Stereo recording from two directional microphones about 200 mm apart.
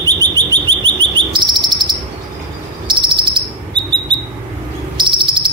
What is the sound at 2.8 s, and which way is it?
Cricket, 25° right (ahead or behind).